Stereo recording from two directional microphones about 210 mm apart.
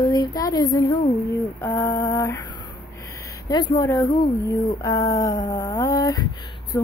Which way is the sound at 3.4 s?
20° left (ahead or behind).